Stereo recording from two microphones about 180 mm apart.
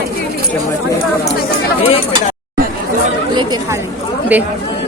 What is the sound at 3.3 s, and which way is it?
Speech, 25° right (ahead or behind).